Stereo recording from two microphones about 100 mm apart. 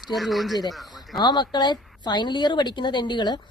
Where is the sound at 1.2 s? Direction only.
45° left (ahead or behind).